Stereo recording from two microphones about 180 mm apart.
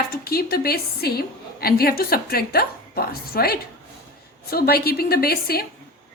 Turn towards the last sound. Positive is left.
turn(degrees=60)  # may be behind; listen again after turning